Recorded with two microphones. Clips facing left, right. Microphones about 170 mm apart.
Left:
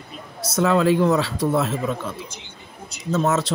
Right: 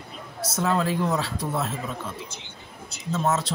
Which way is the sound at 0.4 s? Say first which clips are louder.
Left 6 dB; 85° left.